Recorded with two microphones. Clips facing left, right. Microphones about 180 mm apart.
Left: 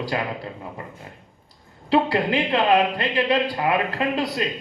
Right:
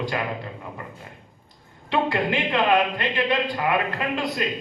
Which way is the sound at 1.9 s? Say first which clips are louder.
Left 3 dB; 35° left (ahead or behind).